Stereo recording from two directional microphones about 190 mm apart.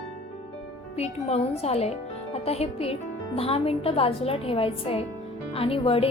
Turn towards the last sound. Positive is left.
turn(degrees=30)  # may be behind; listen again after turning